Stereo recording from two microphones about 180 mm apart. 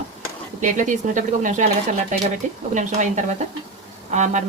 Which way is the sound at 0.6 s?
45° right (ahead or behind).